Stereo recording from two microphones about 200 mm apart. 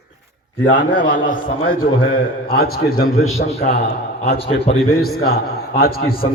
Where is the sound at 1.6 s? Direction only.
45° left (ahead or behind).